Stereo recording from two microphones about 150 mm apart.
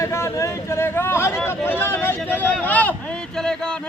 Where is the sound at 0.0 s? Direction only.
20° left (ahead or behind).